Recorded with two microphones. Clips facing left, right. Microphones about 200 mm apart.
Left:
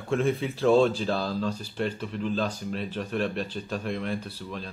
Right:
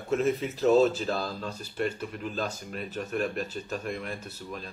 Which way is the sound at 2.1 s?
5° right (ahead or behind).